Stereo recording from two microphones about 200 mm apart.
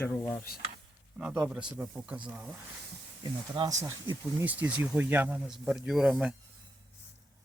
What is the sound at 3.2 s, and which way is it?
Speech, 20° right (ahead or behind).